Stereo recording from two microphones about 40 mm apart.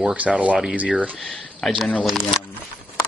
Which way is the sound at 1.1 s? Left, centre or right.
Left.